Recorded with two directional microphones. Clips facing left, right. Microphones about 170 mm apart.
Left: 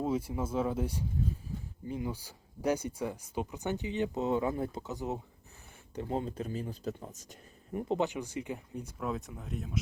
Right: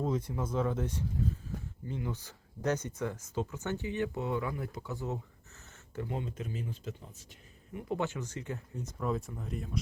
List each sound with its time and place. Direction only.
0.0 s speech: 10° left (ahead or behind)
6.1 s speech: 35° left (ahead or behind)
7.9 s speech: 20° left (ahead or behind); by 9.8 s centre (ahead or behind)